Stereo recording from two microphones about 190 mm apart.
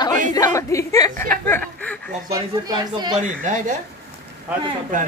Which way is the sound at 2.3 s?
20° right (ahead or behind).